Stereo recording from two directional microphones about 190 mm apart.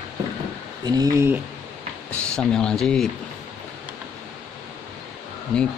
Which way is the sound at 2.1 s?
5° left (ahead or behind).